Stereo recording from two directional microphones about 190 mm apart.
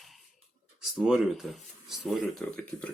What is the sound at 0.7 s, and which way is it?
Speech, centre (ahead or behind).